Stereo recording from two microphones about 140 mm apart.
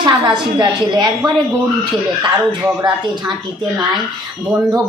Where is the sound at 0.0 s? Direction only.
30° right (ahead or behind).